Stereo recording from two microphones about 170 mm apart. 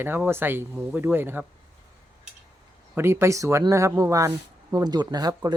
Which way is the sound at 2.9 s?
15° right (ahead or behind).